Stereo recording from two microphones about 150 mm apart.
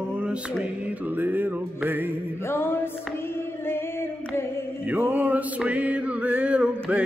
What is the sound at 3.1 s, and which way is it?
Female singing, 15° left (ahead or behind).